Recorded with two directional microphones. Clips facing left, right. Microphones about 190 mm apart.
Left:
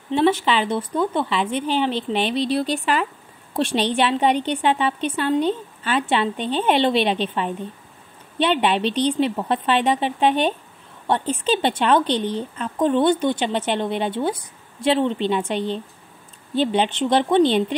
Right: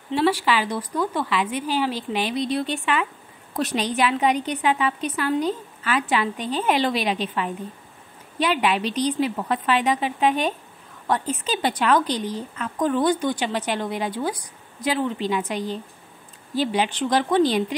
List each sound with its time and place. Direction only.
0.1 s speech: 20° left (ahead or behind)